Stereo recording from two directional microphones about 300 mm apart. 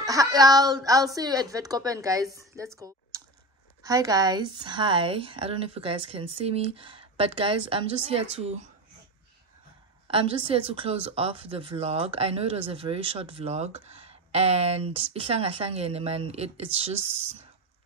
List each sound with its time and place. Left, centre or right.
0.0 s a woman's voice: centre
3.8 s speech: centre
10.0 s speech: centre